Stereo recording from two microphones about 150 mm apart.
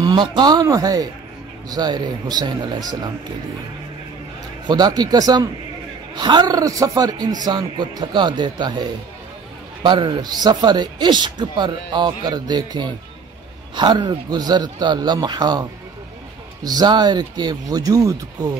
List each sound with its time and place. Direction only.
0.0 s speech: 30° right (ahead or behind)
4.6 s speech: 30° right (ahead or behind)
9.8 s speech: 30° right (ahead or behind)
16.6 s speech: 30° right (ahead or behind)